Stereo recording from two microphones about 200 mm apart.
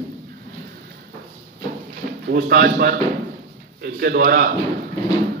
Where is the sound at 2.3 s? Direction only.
50° right (ahead or behind).